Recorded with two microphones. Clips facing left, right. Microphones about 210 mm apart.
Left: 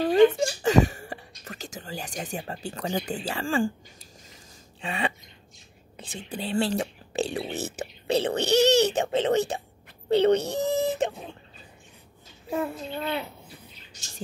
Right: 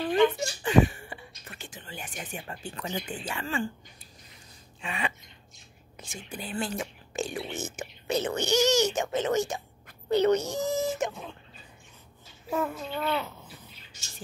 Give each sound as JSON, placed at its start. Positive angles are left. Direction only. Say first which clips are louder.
{"t": 0.0, "sound": "a sound", "louder": "left 5 dB", "side_deg": 40}
{"t": 0.6, "sound": "throat clearing", "louder": "even", "side_deg": 40}
{"t": 3.3, "sound": "a child's voice", "louder": "left 6 dB", "side_deg": 35}
{"t": 4.8, "sound": "a child's voice", "louder": "left 4 dB", "side_deg": 30}
{"t": 8.5, "sound": "a child's voice", "louder": "left 4 dB", "side_deg": 60}
{"t": 8.9, "sound": "a child's voice", "louder": "left 3 dB", "side_deg": 30}
{"t": 10.4, "sound": "a sound", "louder": "left 3 dB", "side_deg": 60}
{"t": 11.0, "sound": "a sound", "louder": "left 4 dB", "side_deg": 30}
{"t": 12.5, "sound": "a child's voice", "louder": "left 1 dB", "side_deg": 35}